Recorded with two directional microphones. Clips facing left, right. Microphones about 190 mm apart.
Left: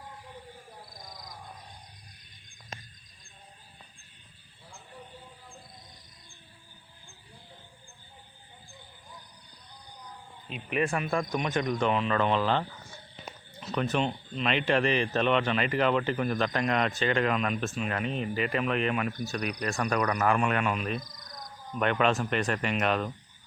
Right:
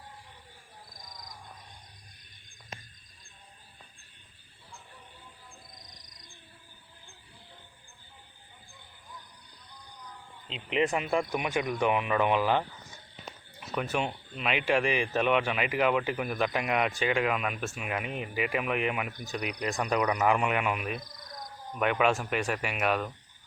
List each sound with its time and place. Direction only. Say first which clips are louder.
10.5 s speech: right 1 dB; 20° right (ahead or behind)